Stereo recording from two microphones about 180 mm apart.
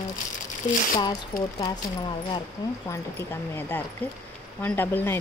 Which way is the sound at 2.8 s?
15° left (ahead or behind).